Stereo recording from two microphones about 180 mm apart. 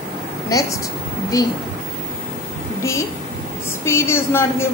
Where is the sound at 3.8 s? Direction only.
15° left (ahead or behind).